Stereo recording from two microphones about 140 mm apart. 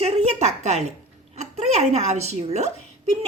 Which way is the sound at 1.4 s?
55° right (ahead or behind).